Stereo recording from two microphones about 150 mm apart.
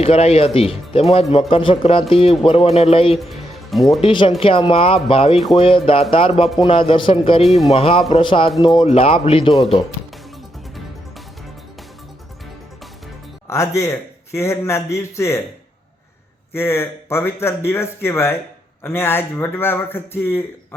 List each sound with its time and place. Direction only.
0.0 s speech: 40° left (ahead or behind)
3.2 s speech: centre (ahead or behind)
4.0 s speech: 35° left (ahead or behind)
13.5 s a man's voice: 20° left (ahead or behind)
16.5 s speech: 15° left (ahead or behind)